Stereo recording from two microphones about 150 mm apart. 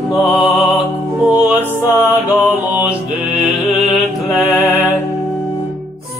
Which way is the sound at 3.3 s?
5° right (ahead or behind).